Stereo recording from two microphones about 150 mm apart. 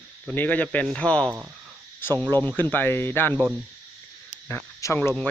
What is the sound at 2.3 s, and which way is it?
Speech, 25° right (ahead or behind).